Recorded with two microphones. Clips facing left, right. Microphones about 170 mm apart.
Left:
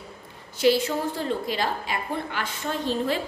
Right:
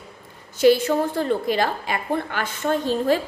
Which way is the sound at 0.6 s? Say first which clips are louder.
Right 5 dB; 50° right (ahead or behind).